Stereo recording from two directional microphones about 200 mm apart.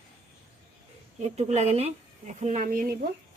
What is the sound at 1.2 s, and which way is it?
Speech, 35° right (ahead or behind).